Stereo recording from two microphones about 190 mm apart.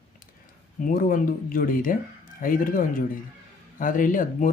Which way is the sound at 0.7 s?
45° left (ahead or behind).